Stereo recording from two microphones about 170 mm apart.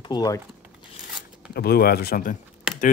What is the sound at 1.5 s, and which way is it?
Speech, 65° left (ahead or behind).